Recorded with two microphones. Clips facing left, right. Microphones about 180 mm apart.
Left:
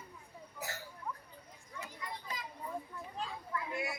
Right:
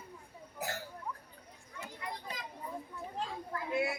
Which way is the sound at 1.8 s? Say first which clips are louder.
Right 2 dB; 65° right (ahead or behind).